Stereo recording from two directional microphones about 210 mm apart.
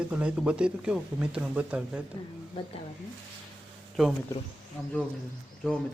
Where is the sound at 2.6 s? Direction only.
25° left (ahead or behind).